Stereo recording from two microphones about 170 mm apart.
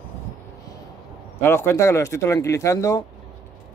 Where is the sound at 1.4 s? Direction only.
15° left (ahead or behind).